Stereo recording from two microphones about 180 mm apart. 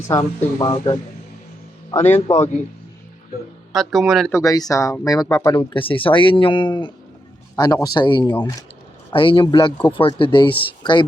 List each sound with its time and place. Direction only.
0.1 s speech: 20° left (ahead or behind)
2.0 s speech: 40° left (ahead or behind)
3.8 s speech: centre (ahead or behind)
4.3 s speech: 20° left (ahead or behind)